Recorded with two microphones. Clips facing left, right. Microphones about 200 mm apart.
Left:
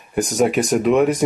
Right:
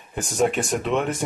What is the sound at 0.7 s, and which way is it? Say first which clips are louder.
Speech: left 8 dB; 5° left (ahead or behind).